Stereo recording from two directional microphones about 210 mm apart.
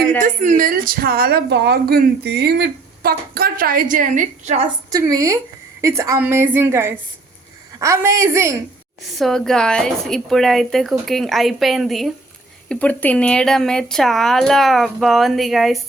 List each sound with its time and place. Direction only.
0.2 s a woman's voice: 40° right (ahead or behind)
4.9 s a woman's voice: 15° right (ahead or behind)
9.1 s speech: centre (ahead or behind)